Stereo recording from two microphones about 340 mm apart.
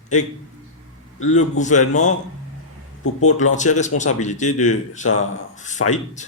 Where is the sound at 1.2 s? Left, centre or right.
Left.